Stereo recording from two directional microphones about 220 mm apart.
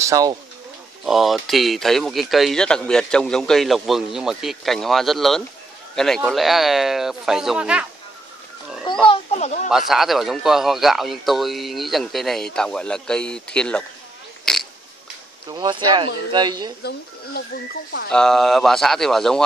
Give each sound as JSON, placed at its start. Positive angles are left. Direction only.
{"t": 0.0, "sound": "speech", "side_deg": -15}
{"t": 1.0, "sound": "speech", "side_deg": 0}
{"t": 9.0, "sound": "a child's voice", "side_deg": 25}
{"t": 9.7, "sound": "speech", "side_deg": 0}
{"t": 14.4, "sound": "a sound", "side_deg": 0}
{"t": 15.4, "sound": "speech", "side_deg": -20}
{"t": 18.1, "sound": "speech", "side_deg": 0}